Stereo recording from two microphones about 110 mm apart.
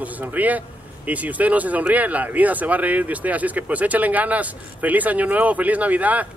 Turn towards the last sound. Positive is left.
turn(degrees=-15)  # may be behind; listen again after turning